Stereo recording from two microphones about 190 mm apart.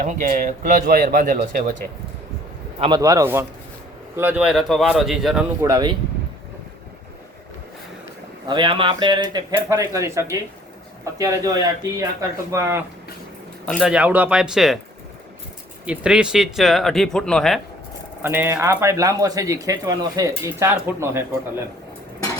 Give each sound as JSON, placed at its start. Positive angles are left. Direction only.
{"t": 0.0, "sound": "speech", "side_deg": -45}
{"t": 2.8, "sound": "speech", "side_deg": -20}
{"t": 5.6, "sound": "speech", "side_deg": -20}
{"t": 8.4, "sound": "speech", "side_deg": -25}
{"t": 13.7, "sound": "speech", "side_deg": 0}
{"t": 15.9, "sound": "speech", "side_deg": -5}
{"t": 18.2, "sound": "speech", "side_deg": -10}